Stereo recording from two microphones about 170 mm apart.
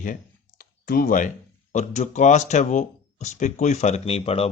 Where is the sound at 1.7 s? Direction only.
45° left (ahead or behind).